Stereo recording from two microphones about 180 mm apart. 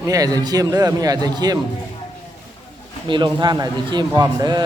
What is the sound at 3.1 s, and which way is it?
Speech, 25° right (ahead or behind).